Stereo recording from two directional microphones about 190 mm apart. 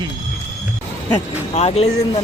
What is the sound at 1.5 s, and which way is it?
Speech, 35° left (ahead or behind).